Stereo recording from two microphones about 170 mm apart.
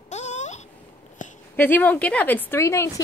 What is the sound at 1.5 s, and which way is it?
A woman's voice, 10° left (ahead or behind).